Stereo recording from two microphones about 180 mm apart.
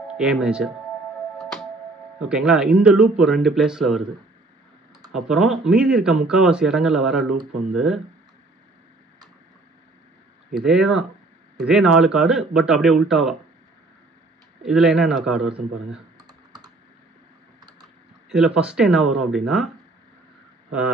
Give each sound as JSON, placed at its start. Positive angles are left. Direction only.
{"t": 0.1, "sound": "speech", "side_deg": -5}
{"t": 1.4, "sound": "music", "side_deg": 0}
{"t": 2.1, "sound": "speech", "side_deg": -5}
{"t": 5.1, "sound": "speech", "side_deg": -5}
{"t": 10.5, "sound": "speech", "side_deg": -5}
{"t": 14.6, "sound": "speech", "side_deg": -5}
{"t": 16.2, "sound": "computer keyboard", "side_deg": -20}
{"t": 17.6, "sound": "typing", "side_deg": -20}
{"t": 18.3, "sound": "speech", "side_deg": -5}